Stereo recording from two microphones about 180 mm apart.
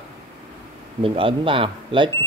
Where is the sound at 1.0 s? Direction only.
30° right (ahead or behind).